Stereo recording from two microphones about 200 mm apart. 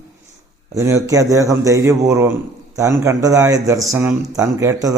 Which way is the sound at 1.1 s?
15° right (ahead or behind).